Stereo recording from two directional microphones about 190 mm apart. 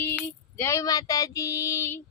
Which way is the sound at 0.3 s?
15° left (ahead or behind).